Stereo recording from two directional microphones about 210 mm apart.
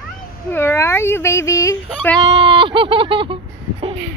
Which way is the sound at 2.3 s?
25° right (ahead or behind).